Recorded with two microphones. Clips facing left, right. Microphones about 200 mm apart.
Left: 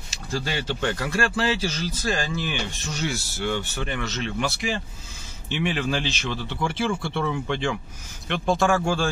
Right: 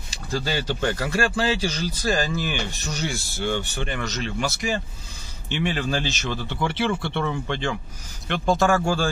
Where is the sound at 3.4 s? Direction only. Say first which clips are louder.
Right 2 dB; 30° right (ahead or behind).